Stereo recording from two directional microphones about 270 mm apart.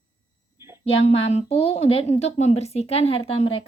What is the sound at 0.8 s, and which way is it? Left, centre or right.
A woman's voice, left.